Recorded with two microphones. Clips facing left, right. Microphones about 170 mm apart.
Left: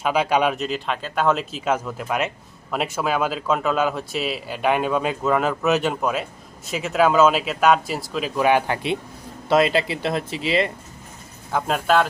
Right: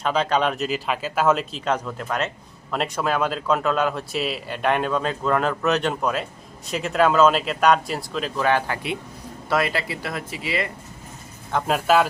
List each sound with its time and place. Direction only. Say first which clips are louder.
0.0 s speech: left 2 dB; 10° left (ahead or behind)
8.4 s speech: left 3 dB; 15° left (ahead or behind)
11.5 s speech: even; 5° right (ahead or behind)